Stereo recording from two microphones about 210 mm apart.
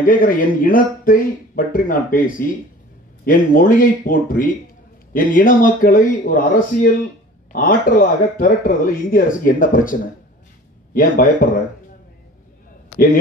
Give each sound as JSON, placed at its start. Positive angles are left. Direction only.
{"t": 0.0, "sound": "speech", "side_deg": 40}
{"t": 12.9, "sound": "a man's voice", "side_deg": 45}